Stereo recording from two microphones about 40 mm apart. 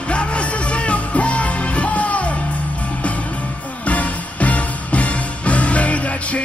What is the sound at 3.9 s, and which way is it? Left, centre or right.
Music, left.